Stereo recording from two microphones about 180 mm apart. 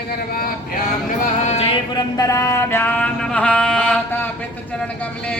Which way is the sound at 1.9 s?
20° left (ahead or behind).